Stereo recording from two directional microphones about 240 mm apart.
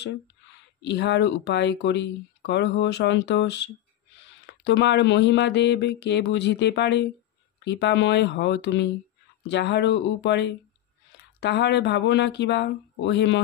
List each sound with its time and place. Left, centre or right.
0.8 s speech: left